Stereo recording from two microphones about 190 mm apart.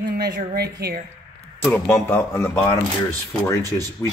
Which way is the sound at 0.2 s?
55° right (ahead or behind).